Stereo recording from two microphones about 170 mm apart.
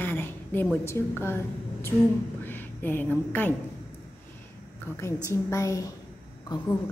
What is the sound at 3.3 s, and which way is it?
Music, 10° left (ahead or behind).